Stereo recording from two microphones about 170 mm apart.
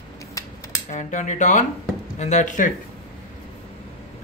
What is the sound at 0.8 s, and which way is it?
Speech, 45° left (ahead or behind).